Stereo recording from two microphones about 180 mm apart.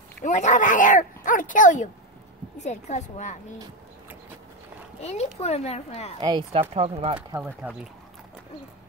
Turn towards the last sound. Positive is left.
turn(degrees=-5)  # may be behind; listen again after turning